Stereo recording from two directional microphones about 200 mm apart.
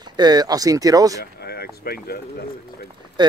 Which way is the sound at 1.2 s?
50° left (ahead or behind).